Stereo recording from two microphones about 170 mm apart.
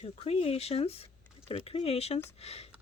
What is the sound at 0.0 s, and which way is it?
Speech, 35° left (ahead or behind).